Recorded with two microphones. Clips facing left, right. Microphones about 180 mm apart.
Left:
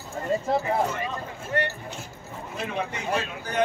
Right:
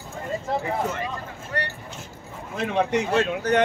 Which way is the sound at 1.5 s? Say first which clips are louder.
Left 3 dB; 20° left (ahead or behind).